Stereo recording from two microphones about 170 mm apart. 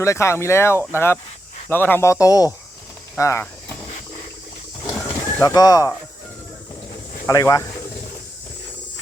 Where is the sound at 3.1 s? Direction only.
15° left (ahead or behind).